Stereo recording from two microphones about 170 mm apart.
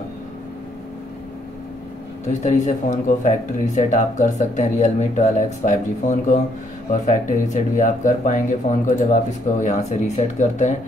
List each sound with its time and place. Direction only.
2.2 s speech: 45° left (ahead or behind)